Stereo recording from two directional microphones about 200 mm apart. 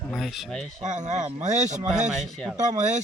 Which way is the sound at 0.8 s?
35° right (ahead or behind).